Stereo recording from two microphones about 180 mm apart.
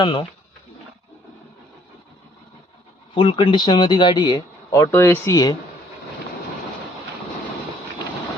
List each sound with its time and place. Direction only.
0.0 s speech: 30° left (ahead or behind)
3.2 s speech: 25° left (ahead or behind)